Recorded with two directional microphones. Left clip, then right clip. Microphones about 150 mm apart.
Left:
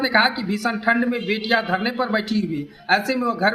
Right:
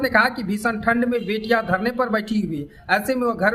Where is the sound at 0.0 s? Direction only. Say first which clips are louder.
Even; 45° right (ahead or behind).